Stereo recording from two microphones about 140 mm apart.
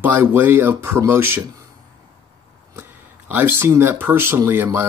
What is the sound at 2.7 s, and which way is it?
Speech, 15° right (ahead or behind).